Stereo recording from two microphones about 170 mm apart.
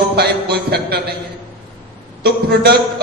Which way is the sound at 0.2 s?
70° right (ahead or behind).